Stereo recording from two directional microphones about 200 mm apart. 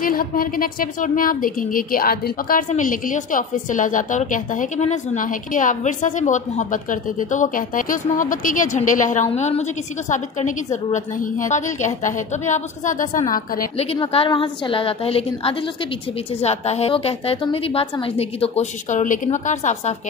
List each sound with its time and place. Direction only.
0.0 s a woman's voice: 45° left (ahead or behind)
13.7 s a woman's voice: 30° left (ahead or behind)